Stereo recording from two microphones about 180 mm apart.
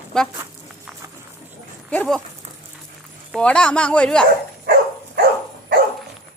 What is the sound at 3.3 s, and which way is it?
Speech, 5° left (ahead or behind).